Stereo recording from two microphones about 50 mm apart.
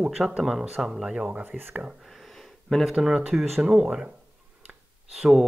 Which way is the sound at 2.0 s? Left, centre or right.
Centre.